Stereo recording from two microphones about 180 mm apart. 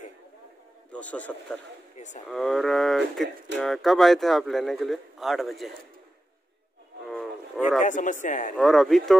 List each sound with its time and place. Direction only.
0.9 s a man's voice: 5° left (ahead or behind)
2.0 s a sound: 40° left (ahead or behind)
2.2 s speech: centre (ahead or behind)
7.1 s insect: centre (ahead or behind)
7.8 s speech: 45° left (ahead or behind)
8.5 s speech: centre (ahead or behind)